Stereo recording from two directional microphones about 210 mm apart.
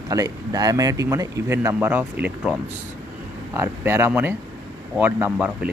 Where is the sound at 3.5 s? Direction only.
10° right (ahead or behind).